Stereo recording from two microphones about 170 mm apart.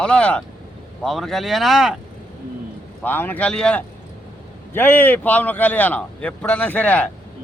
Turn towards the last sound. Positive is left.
turn(degrees=10)  # may be behind; listen again after turning